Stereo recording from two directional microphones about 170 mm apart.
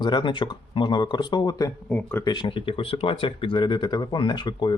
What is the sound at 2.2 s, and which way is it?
Speech, 30° left (ahead or behind).